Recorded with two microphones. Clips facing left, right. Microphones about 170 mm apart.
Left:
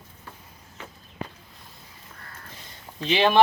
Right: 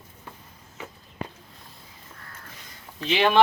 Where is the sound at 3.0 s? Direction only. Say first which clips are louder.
Left 1 dB; 15° left (ahead or behind).